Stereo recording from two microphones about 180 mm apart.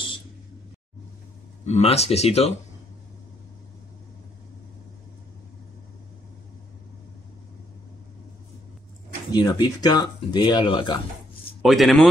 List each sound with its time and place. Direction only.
1.7 s speech: 35° left (ahead or behind)
9.3 s speech: 20° left (ahead or behind)
11.6 s a man's voice: centre (ahead or behind)